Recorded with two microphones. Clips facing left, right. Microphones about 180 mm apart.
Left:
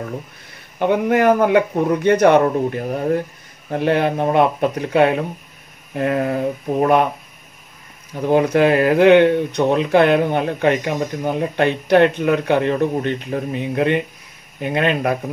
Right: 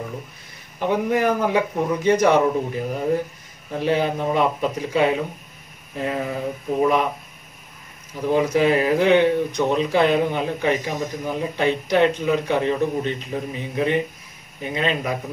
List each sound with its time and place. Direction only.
0.7 s speech: 65° left (ahead or behind)
8.3 s speech: 65° left (ahead or behind)